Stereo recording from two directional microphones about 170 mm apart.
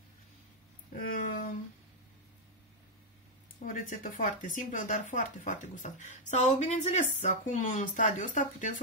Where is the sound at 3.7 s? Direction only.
50° left (ahead or behind).